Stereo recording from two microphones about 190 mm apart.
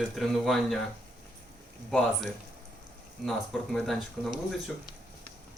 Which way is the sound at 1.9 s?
Centre (ahead or behind).